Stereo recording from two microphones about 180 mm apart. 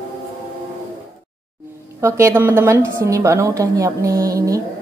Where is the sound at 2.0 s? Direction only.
15° right (ahead or behind).